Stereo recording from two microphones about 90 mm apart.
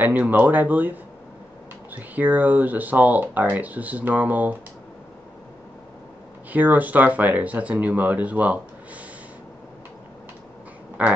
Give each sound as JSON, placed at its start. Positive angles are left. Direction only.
{"t": 0.0, "sound": "speech", "side_deg": -20}
{"t": 6.5, "sound": "speech", "side_deg": -20}
{"t": 11.0, "sound": "speech", "side_deg": -15}